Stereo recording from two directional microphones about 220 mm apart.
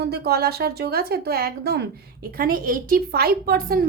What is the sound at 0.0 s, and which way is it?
A woman's voice, 45° right (ahead or behind).